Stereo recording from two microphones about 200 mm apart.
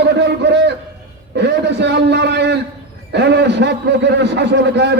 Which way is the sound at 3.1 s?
55° right (ahead or behind).